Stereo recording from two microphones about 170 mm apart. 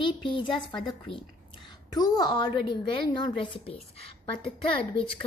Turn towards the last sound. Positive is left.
turn(degrees=30)  # may be behind; listen again after turning